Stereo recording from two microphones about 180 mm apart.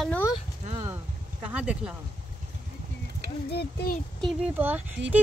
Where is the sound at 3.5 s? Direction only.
65° left (ahead or behind).